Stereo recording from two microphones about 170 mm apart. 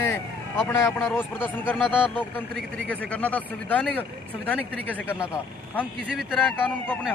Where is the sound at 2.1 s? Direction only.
10° left (ahead or behind).